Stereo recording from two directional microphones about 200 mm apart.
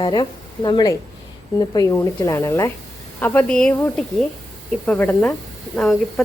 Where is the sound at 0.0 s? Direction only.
20° left (ahead or behind).